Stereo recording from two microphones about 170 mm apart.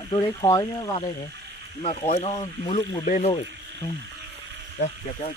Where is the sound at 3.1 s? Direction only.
40° left (ahead or behind).